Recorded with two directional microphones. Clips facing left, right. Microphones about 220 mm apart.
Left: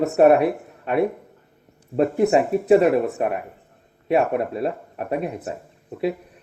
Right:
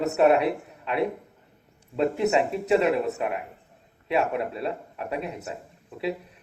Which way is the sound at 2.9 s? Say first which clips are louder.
Left 5 dB; 50° left (ahead or behind).